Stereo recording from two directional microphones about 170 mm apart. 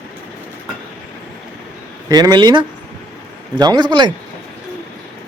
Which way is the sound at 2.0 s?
20° right (ahead or behind).